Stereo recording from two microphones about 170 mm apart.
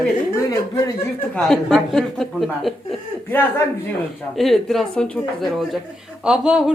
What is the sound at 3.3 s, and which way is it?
Speech, 15° left (ahead or behind).